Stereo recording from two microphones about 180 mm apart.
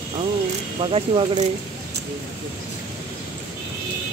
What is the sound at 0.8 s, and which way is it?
Speech, 30° right (ahead or behind).